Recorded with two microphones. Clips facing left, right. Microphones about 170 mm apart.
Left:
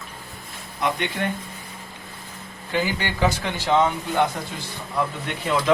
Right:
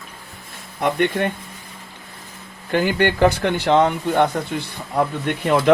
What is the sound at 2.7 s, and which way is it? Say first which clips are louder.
Speech: right 7 dB; 55° right (ahead or behind).